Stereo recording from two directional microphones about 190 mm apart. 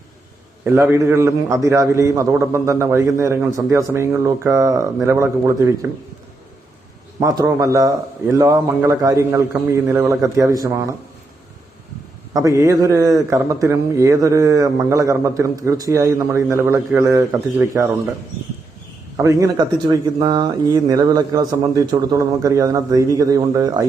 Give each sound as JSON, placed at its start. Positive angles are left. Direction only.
{"t": 0.6, "sound": "a man's voice", "side_deg": -10}
{"t": 7.2, "sound": "a man's voice", "side_deg": -20}
{"t": 12.3, "sound": "a man's voice", "side_deg": -15}
{"t": 19.1, "sound": "speech", "side_deg": -15}